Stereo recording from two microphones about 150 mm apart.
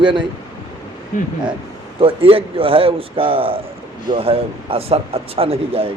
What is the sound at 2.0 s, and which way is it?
A man's voice, 35° right (ahead or behind).